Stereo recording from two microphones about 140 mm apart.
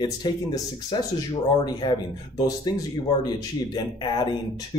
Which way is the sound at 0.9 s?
30° left (ahead or behind).